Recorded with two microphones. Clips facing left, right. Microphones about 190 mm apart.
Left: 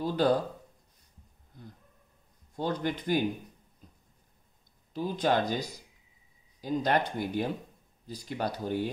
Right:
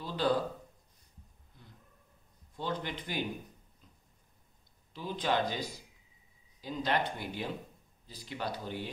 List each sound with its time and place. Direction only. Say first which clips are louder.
0.0 s speech: left 5 dB; 45° left (ahead or behind)
2.5 s speech: left 6 dB; 45° left (ahead or behind)
4.9 s speech: left 5 dB; 45° left (ahead or behind)